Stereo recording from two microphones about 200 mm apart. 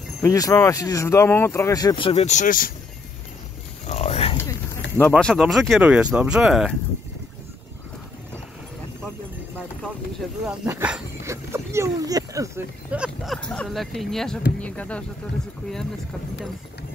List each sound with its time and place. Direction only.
0.2 s speech: 15° left (ahead or behind); by 2.7 s 45° left (ahead or behind)
3.8 s a sound: 35° left (ahead or behind)
5.1 s speech: centre (ahead or behind)
10.6 s speech: 5° right (ahead or behind)
12.9 s speech: 5° right (ahead or behind)